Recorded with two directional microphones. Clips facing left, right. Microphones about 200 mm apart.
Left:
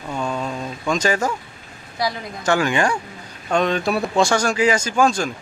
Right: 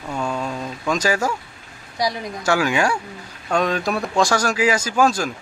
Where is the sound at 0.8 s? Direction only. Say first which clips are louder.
Even; 5° right (ahead or behind).